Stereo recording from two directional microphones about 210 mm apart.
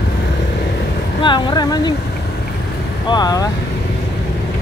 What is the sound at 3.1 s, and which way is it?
Vehicle, 20° left (ahead or behind).